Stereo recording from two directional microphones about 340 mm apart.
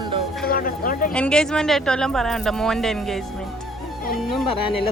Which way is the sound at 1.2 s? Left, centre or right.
Centre.